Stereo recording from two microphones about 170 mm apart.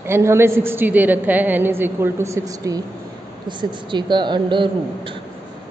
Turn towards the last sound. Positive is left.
turn(degrees=-30)  # may be behind; listen again after turning